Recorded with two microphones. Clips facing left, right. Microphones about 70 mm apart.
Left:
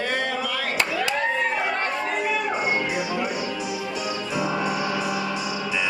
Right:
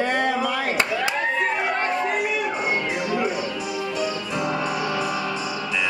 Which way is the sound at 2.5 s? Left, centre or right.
Centre.